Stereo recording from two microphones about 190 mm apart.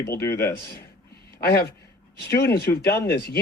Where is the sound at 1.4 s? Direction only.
55° left (ahead or behind).